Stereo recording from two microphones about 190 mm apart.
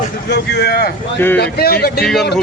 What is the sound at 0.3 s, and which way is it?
Speech, 60° left (ahead or behind).